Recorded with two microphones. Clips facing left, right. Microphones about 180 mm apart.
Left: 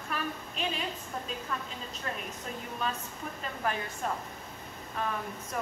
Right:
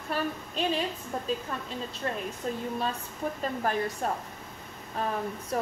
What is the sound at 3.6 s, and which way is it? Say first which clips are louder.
A woman's voice: right 3 dB; 40° right (ahead or behind).